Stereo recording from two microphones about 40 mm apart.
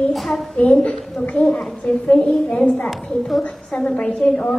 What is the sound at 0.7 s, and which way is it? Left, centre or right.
A child's voice, left.